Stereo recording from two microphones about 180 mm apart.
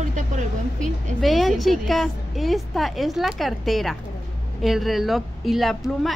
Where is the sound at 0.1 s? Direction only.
45° right (ahead or behind).